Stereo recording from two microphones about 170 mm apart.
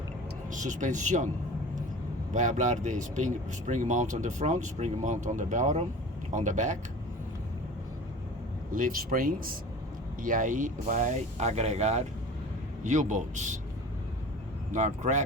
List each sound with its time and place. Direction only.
0.5 s speech: 45° right (ahead or behind)
2.3 s speech: 45° right (ahead or behind)
8.7 s speech: 55° right (ahead or behind)
14.7 s speech: 45° right (ahead or behind)